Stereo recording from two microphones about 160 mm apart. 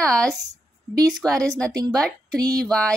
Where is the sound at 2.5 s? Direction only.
5° left (ahead or behind).